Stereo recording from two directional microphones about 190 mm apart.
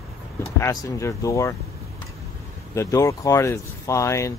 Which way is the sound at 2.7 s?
15° left (ahead or behind).